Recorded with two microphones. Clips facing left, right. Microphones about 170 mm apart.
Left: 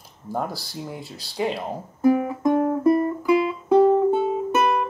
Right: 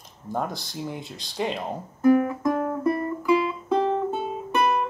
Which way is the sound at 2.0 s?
20° left (ahead or behind).